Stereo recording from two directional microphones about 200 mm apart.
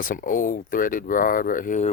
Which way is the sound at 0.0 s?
45° left (ahead or behind).